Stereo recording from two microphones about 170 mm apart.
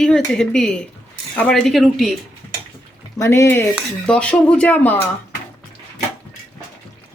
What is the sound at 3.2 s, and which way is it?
Speech, 15° left (ahead or behind).